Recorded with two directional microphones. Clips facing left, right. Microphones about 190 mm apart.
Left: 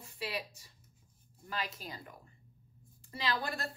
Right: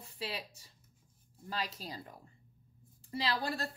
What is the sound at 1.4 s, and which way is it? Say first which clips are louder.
Speech: right 1 dB; 35° right (ahead or behind).